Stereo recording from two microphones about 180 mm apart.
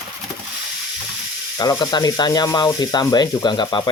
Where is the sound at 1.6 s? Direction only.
25° left (ahead or behind).